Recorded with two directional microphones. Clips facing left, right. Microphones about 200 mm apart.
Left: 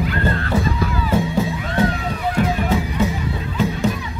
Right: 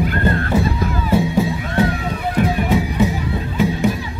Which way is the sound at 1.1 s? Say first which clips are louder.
Right 3 dB; 15° right (ahead or behind).